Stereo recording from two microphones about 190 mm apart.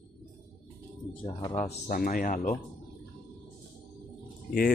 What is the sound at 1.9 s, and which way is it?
Speech, 45° left (ahead or behind).